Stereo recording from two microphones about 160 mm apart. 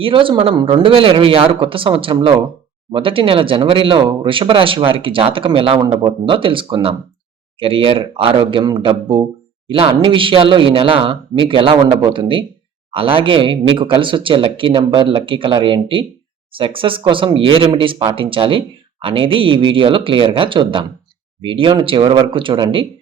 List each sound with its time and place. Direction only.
0.0 s speech: 35° right (ahead or behind)